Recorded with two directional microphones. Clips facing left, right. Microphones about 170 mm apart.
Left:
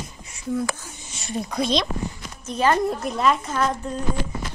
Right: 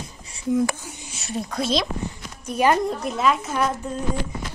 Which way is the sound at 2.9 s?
Centre (ahead or behind).